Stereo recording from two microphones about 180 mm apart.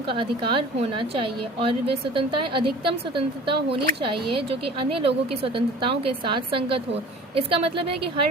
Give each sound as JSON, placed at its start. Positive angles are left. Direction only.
{"t": 0.1, "sound": "a woman's voice", "side_deg": -30}